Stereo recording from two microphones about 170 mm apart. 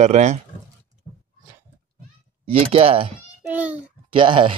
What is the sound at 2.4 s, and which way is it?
Speech, 35° right (ahead or behind).